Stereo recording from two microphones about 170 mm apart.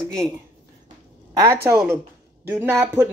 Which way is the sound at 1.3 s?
15° right (ahead or behind).